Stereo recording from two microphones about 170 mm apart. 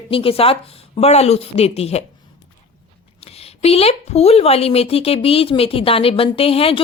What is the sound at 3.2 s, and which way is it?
A woman's voice, 35° left (ahead or behind).